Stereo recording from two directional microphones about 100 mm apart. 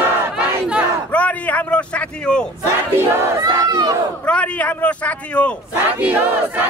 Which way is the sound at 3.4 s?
40° right (ahead or behind).